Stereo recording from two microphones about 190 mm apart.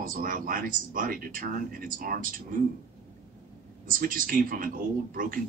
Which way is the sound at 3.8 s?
45° right (ahead or behind).